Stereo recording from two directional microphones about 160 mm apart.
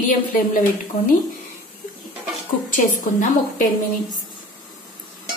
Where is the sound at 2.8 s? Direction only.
55° left (ahead or behind).